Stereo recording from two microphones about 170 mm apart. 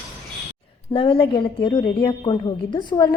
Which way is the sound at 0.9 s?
30° left (ahead or behind).